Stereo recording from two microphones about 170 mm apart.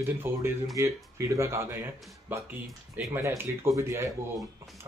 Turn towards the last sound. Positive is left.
turn(degrees=-15)  # may be behind; listen again after turning